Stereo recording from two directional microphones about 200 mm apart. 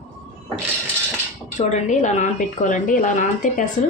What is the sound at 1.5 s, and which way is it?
A woman's voice, 35° left (ahead or behind).